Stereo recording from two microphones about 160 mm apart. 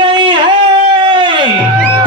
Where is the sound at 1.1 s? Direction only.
30° right (ahead or behind).